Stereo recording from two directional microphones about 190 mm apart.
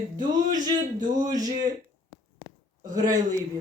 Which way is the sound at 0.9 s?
20° right (ahead or behind).